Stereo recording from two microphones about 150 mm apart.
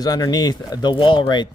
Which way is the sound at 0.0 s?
25° left (ahead or behind).